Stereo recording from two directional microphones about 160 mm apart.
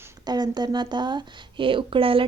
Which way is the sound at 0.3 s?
25° right (ahead or behind).